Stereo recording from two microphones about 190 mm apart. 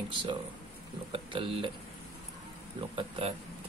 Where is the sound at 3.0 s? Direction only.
30° right (ahead or behind).